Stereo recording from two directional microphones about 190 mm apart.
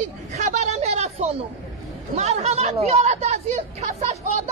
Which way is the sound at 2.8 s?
35° right (ahead or behind).